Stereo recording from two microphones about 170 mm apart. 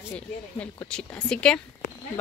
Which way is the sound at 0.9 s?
5° left (ahead or behind).